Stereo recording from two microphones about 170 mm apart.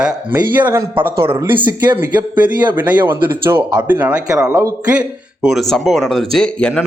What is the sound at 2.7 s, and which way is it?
A man's voice, 10° right (ahead or behind).